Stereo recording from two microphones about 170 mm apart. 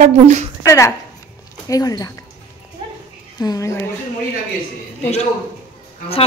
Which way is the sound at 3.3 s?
20° left (ahead or behind).